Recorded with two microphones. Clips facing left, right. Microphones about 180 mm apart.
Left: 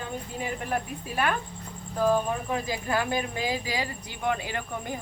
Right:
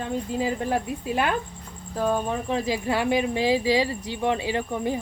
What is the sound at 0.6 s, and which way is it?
Speech, 25° right (ahead or behind).